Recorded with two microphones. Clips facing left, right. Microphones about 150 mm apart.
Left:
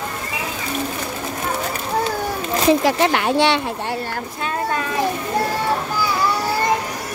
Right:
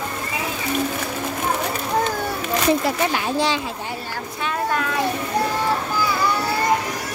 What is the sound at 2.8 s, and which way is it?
Speech, 85° left.